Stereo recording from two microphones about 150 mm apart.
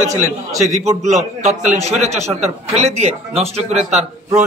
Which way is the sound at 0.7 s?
50° right (ahead or behind).